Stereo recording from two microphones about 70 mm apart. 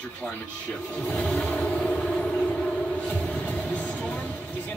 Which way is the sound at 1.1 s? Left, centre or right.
Centre.